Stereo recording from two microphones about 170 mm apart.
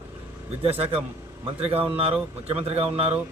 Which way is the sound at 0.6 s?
35° right (ahead or behind).